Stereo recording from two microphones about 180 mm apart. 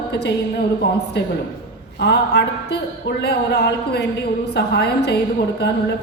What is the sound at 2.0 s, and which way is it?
A woman's voice, 70° left (ahead or behind).